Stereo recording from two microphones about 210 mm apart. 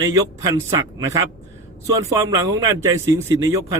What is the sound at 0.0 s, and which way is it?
A man's voice, 15° right (ahead or behind).